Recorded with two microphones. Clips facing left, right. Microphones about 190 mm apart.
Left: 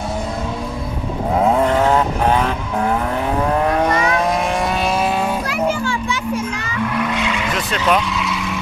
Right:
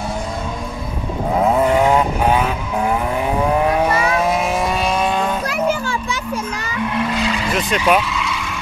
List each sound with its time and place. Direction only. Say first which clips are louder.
1.4 s vehicle: right 1 dB; 5° right (ahead or behind)
5.5 s children playing: even; 40° right (ahead or behind)
7.0 s vehicle: right 2 dB; 35° right (ahead or behind)
7.5 s vehicle: right 2 dB; 10° right (ahead or behind)
8.1 s vehicle: left 1 dB; centre (ahead or behind)